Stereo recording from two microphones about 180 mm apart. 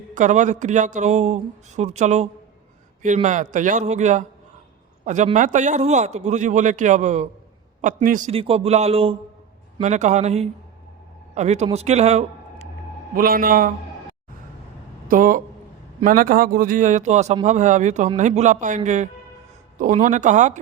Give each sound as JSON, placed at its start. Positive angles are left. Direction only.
{"t": 0.1, "sound": "a man's voice", "side_deg": -40}
{"t": 8.3, "sound": "a man's voice", "side_deg": -30}
{"t": 13.1, "sound": "speech", "side_deg": -55}
{"t": 15.0, "sound": "a man's voice", "side_deg": -50}